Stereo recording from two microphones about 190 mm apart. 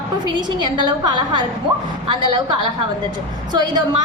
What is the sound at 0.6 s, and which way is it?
Speech, 25° right (ahead or behind).